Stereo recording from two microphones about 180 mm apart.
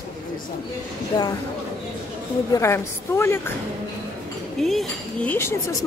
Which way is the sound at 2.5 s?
15° left (ahead or behind).